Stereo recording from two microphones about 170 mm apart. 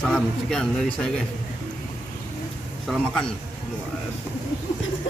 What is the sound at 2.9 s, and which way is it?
Speech, centre (ahead or behind).